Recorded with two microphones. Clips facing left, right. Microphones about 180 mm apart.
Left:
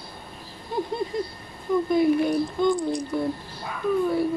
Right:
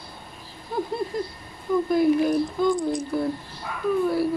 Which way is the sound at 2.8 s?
20° right (ahead or behind).